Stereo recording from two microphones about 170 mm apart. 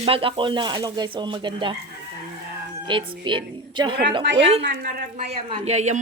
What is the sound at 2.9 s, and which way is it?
A woman's voice, 30° right (ahead or behind).